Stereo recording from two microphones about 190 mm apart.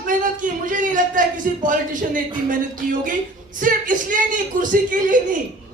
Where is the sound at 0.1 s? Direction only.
45° right (ahead or behind).